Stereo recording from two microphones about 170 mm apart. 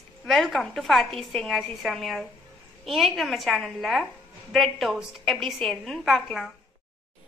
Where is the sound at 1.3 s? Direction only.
Centre (ahead or behind).